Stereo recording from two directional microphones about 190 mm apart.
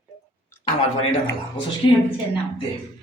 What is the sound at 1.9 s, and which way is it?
Speech, 25° left (ahead or behind).